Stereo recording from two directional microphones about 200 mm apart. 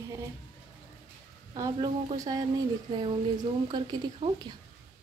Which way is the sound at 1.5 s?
20° right (ahead or behind).